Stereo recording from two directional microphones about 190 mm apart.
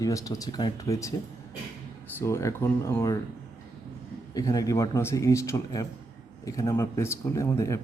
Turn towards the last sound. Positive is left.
turn(degrees=15)  # may be behind; listen again after turning